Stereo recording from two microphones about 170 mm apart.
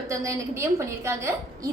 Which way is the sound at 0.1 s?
15° right (ahead or behind).